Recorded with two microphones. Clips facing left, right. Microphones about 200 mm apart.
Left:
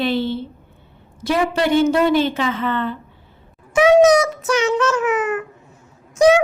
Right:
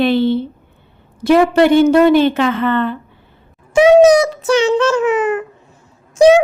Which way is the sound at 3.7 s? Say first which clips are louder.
Right 4 dB; 30° right (ahead or behind).